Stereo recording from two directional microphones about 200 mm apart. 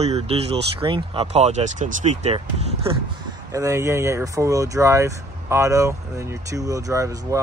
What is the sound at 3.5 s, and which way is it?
Speech, 15° right (ahead or behind).